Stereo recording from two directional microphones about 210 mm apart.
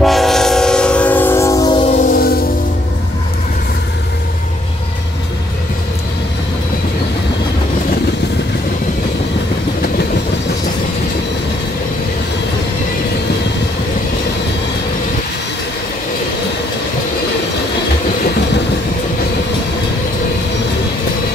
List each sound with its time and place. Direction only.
0.0 s train: centre (ahead or behind); by 1.9 s 20° left (ahead or behind)
2.1 s music: 45° left (ahead or behind)